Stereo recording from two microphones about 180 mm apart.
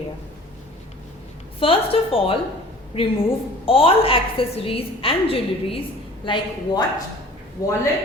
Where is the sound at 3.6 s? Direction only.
30° left (ahead or behind).